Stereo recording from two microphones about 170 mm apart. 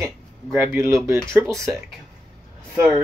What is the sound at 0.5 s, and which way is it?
Speech, 15° right (ahead or behind).